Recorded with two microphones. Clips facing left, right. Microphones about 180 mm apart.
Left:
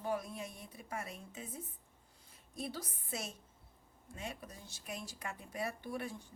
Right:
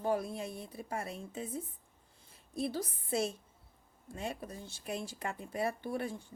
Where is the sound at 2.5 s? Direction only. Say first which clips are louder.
Right 7 dB; 30° right (ahead or behind).